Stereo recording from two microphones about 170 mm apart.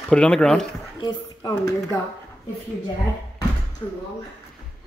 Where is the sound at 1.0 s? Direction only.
25° left (ahead or behind).